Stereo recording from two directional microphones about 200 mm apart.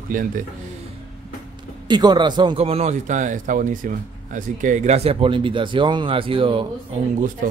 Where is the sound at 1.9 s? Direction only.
20° right (ahead or behind).